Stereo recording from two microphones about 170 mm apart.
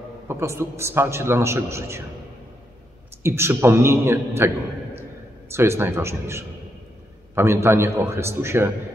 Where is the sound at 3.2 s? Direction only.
15° right (ahead or behind).